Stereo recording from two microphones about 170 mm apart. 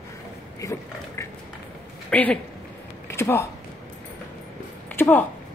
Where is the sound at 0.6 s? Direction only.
20° left (ahead or behind).